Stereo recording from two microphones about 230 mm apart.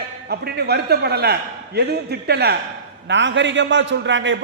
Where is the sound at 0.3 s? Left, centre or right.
Right.